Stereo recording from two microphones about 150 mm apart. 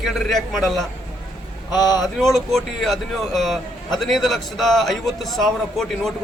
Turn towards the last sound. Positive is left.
turn(degrees=0)  # may be behind; listen again after turning